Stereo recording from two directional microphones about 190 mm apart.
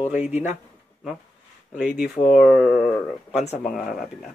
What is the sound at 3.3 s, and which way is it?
Speech, 35° left (ahead or behind).